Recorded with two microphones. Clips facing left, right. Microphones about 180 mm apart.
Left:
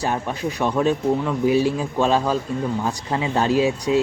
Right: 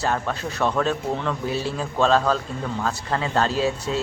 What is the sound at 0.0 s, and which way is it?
Speech, 15° left (ahead or behind).